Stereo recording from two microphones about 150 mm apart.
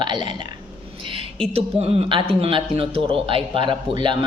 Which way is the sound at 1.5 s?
40° right (ahead or behind).